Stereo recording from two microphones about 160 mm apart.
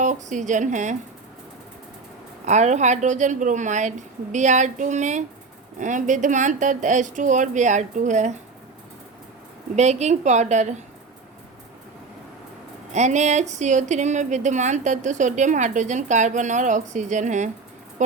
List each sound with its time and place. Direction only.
0.0 s a woman's voice: 50° right (ahead or behind)
2.5 s a woman's voice: 45° right (ahead or behind)
9.7 s a woman's voice: 45° right (ahead or behind)
12.9 s a woman's voice: 45° right (ahead or behind)